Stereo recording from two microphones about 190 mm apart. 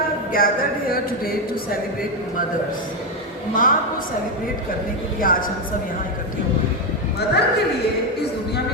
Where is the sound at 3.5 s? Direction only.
45° left (ahead or behind).